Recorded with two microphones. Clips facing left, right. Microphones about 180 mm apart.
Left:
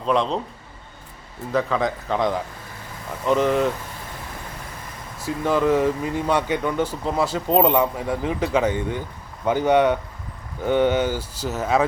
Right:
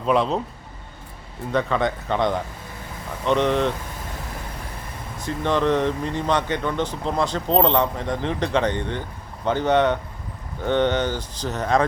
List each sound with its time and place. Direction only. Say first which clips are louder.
0.0 s speech: right 1 dB; 5° right (ahead or behind)
1.5 s speech: even; centre (ahead or behind)
5.2 s speech: left 1 dB; 5° left (ahead or behind)